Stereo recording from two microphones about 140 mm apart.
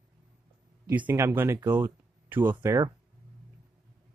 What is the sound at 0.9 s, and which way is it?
Speech, 15° right (ahead or behind).